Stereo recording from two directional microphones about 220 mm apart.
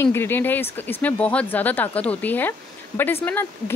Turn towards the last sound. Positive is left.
turn(degrees=10)  # may be behind; listen again after turning